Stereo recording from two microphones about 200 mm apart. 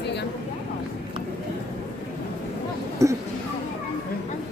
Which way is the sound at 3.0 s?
15° right (ahead or behind).